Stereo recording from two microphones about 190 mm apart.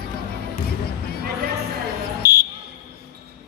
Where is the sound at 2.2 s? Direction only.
55° left (ahead or behind).